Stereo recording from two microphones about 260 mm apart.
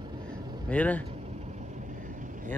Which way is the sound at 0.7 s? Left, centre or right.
Centre.